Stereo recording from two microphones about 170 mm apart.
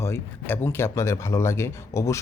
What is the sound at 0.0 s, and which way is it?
Speech, 15° left (ahead or behind).